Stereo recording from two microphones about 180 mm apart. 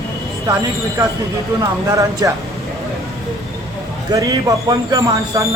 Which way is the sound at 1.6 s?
20° right (ahead or behind).